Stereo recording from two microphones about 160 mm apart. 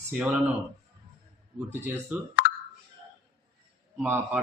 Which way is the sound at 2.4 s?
60° left (ahead or behind).